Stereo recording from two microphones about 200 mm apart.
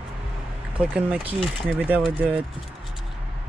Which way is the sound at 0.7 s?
5° right (ahead or behind).